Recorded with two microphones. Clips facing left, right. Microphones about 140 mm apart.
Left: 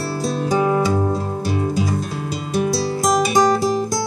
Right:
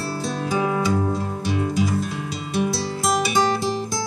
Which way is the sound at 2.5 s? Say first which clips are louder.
Left 4 dB; 40° left (ahead or behind).